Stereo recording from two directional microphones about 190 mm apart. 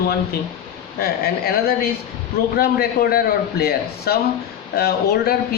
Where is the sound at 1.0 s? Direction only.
55° left (ahead or behind).